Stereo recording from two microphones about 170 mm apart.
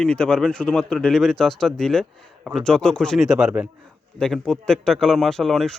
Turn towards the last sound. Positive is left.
turn(degrees=0)  # may be behind; listen again after turning